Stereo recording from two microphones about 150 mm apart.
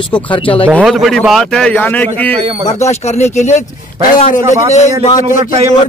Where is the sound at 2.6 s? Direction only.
50° left (ahead or behind).